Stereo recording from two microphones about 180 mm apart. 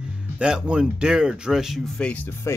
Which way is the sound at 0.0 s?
5° right (ahead or behind).